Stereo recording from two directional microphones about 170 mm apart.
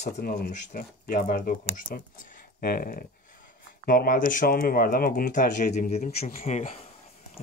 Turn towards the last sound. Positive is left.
turn(degrees=45)  # may be behind; listen again after turning